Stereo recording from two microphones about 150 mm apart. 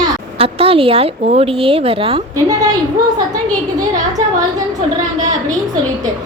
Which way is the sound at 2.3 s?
25° right (ahead or behind).